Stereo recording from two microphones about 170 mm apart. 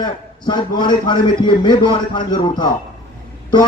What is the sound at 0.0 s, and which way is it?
Speech, 25° left (ahead or behind).